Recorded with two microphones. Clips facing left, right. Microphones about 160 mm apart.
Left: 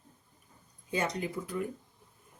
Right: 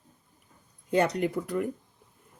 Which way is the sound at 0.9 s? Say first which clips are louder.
Right 8 dB; 65° right (ahead or behind).